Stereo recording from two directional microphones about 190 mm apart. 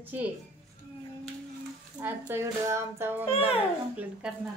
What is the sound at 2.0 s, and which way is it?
Speech, 10° right (ahead or behind).